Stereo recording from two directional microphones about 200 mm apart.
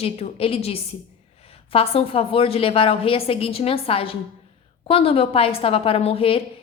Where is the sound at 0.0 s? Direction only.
30° left (ahead or behind).